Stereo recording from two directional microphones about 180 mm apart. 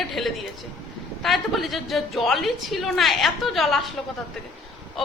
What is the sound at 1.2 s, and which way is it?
A woman's voice, centre (ahead or behind).